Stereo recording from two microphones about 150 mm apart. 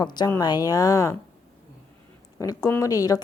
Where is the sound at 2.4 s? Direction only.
25° left (ahead or behind).